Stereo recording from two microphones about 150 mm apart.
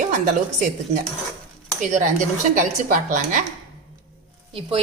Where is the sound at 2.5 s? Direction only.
65° right (ahead or behind).